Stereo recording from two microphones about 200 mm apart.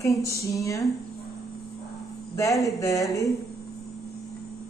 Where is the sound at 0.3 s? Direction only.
15° left (ahead or behind).